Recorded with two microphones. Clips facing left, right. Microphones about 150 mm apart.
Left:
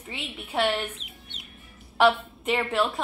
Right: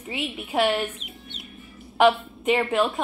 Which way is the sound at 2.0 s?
5° right (ahead or behind).